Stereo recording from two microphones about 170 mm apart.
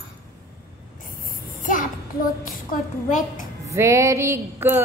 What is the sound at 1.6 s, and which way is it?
Child singing, 50° left (ahead or behind).